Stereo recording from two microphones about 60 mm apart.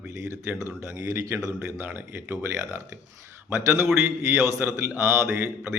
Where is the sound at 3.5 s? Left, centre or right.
Right.